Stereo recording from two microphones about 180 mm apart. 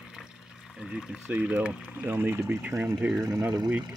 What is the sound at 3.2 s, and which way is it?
Speech, 20° right (ahead or behind).